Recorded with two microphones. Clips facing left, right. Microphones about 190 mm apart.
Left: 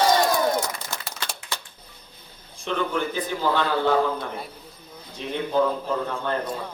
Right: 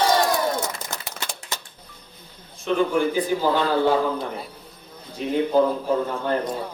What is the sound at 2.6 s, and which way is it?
Speech, 10° right (ahead or behind).